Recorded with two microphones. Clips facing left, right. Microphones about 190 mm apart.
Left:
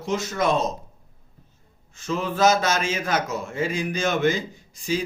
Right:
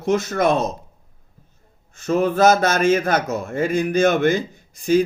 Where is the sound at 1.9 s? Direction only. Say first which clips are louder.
Right 8 dB; 60° right (ahead or behind).